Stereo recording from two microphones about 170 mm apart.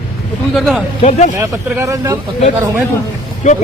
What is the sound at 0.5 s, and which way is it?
Speech, centre (ahead or behind).